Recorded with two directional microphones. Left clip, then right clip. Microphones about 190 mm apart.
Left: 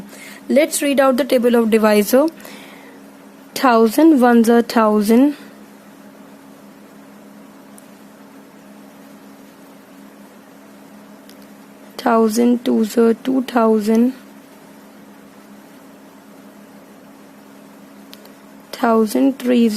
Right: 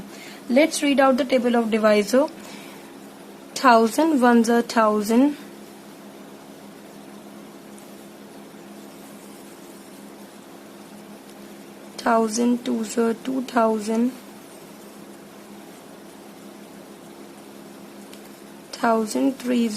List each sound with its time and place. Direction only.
0.3 s a woman's voice: 60° left (ahead or behind); by 5.3 s 40° left (ahead or behind)
11.9 s speech: 40° left (ahead or behind)
18.7 s speech: 40° left (ahead or behind)